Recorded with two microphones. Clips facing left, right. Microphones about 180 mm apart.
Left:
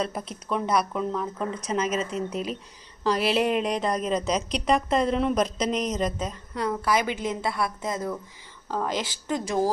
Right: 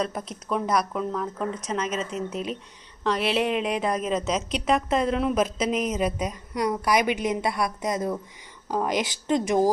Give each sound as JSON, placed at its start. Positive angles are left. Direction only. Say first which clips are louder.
{"t": 0.0, "sound": "a woman's voice", "louder": "right 1 dB", "side_deg": 5}